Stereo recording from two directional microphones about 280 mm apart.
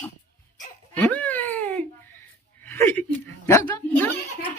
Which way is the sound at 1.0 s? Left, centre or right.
Centre.